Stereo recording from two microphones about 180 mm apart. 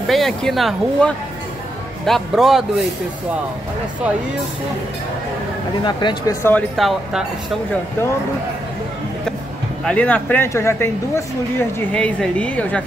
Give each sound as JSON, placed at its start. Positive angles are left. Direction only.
{"t": 0.1, "sound": "speech", "side_deg": 0}
{"t": 5.9, "sound": "speech", "side_deg": 25}
{"t": 6.8, "sound": "speech", "side_deg": 0}
{"t": 9.8, "sound": "speech", "side_deg": 10}